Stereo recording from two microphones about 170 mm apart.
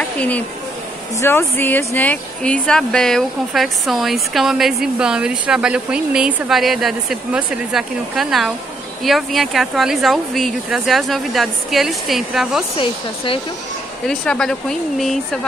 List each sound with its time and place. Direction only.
1.2 s speech: 15° left (ahead or behind)
12.7 s speech: 30° left (ahead or behind)
14.0 s speech: 5° left (ahead or behind)